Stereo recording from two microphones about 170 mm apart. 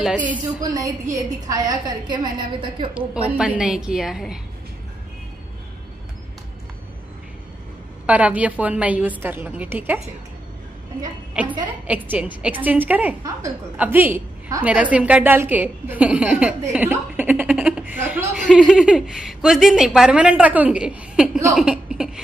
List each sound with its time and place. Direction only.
0.0 s a woman's voice: 10° right (ahead or behind)
0.6 s a woman's voice: 20° right (ahead or behind)
3.3 s a woman's voice: 5° right (ahead or behind)
8.1 s a woman's voice: 10° right (ahead or behind)
11.9 s a woman's voice: 10° right (ahead or behind)